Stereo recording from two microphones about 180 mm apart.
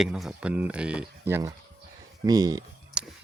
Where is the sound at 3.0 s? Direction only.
5° right (ahead or behind).